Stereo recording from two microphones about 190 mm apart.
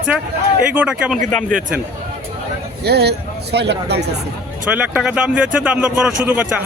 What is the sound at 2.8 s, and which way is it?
Speech, 60° right (ahead or behind).